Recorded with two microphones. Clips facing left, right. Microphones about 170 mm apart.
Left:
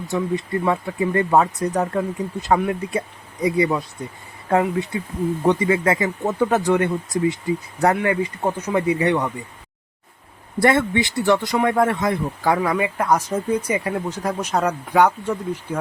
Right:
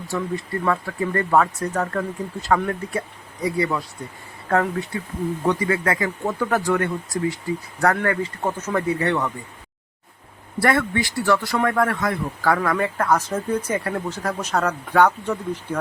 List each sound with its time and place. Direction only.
0.1 s speech: 20° left (ahead or behind)
7.9 s speech: 15° left (ahead or behind)
10.6 s speech: 20° left (ahead or behind)